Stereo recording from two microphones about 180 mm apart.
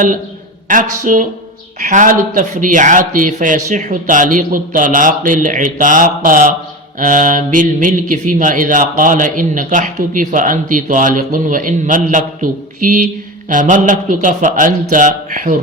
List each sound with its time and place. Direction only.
0.7 s speech: 45° right (ahead or behind)